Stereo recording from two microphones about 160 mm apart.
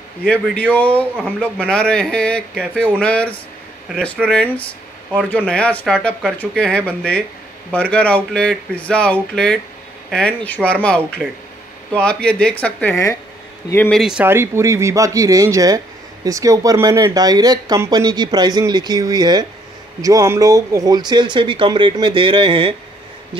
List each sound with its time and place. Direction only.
0.2 s a man's voice: 5° left (ahead or behind)
5.5 s speech: 10° left (ahead or behind)
13.9 s speech: 5° right (ahead or behind); by 22.8 s 35° right (ahead or behind)